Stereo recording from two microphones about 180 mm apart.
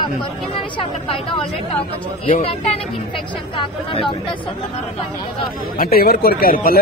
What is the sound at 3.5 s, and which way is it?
Speech, 30° left (ahead or behind).